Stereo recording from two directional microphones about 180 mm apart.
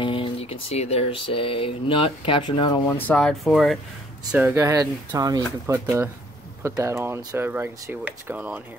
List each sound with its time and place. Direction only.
0.0 s speech: 30° left (ahead or behind)
2.9 s speech: 10° left (ahead or behind)
4.6 s speech: 15° right (ahead or behind)